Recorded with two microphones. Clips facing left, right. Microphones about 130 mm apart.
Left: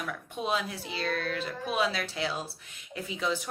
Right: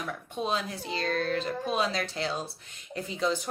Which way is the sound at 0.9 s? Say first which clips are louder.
Right 3 dB; 35° right (ahead or behind).